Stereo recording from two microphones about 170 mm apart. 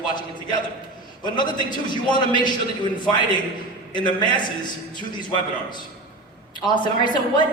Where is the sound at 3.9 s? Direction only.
25° left (ahead or behind).